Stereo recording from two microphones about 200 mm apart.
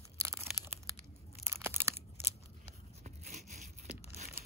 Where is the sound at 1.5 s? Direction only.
10° right (ahead or behind).